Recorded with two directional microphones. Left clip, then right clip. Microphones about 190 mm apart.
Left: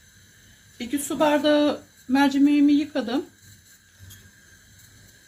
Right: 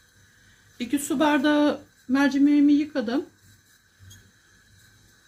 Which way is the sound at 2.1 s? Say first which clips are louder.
Left 1 dB; 10° right (ahead or behind).